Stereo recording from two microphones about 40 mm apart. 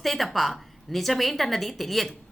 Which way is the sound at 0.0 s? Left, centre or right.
Centre.